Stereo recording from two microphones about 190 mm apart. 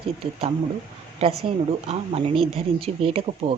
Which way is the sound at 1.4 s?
30° right (ahead or behind).